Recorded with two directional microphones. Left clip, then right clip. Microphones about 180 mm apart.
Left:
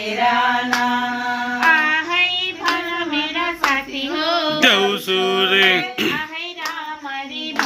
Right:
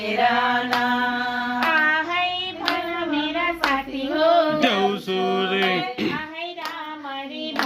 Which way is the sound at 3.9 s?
75° right (ahead or behind).